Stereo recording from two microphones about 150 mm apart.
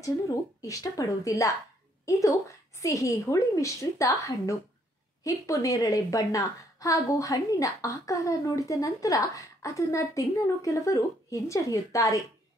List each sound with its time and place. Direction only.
0.6 s a woman's voice: 20° left (ahead or behind)